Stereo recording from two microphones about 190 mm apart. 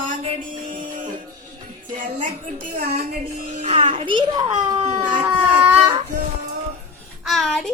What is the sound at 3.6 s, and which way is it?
Speech, 30° right (ahead or behind).